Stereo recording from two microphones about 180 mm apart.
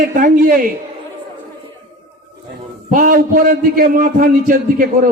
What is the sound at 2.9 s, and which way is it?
A man's voice, 50° right (ahead or behind).